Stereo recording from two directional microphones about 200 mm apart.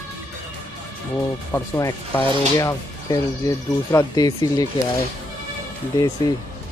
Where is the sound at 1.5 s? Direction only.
15° left (ahead or behind).